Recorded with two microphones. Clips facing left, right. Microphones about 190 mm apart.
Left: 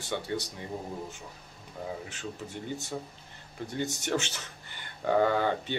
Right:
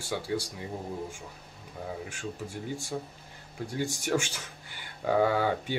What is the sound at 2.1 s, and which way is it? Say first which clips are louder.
Speech: right 1 dB; 10° right (ahead or behind).